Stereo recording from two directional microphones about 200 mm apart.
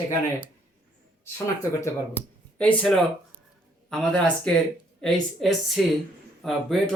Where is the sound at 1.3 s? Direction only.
15° left (ahead or behind).